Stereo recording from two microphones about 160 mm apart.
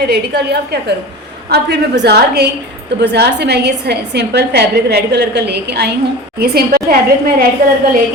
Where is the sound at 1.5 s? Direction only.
90° right.